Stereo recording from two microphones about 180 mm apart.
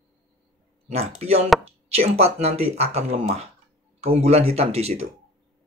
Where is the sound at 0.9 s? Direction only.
35° right (ahead or behind).